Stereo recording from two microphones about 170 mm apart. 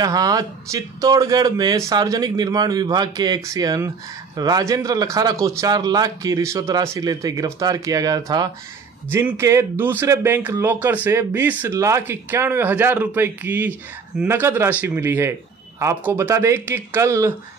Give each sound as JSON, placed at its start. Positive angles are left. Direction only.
{"t": 0.0, "sound": "speech", "side_deg": -20}